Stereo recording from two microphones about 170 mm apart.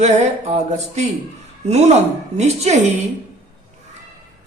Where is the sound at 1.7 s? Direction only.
40° right (ahead or behind).